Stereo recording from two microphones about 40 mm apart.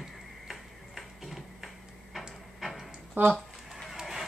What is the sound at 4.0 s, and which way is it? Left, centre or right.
Run, centre.